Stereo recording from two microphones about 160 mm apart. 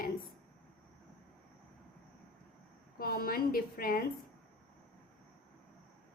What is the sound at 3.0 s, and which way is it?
A woman's voice, 65° left (ahead or behind).